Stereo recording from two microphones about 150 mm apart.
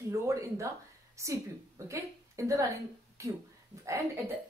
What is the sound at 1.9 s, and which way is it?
Speech, 20° right (ahead or behind).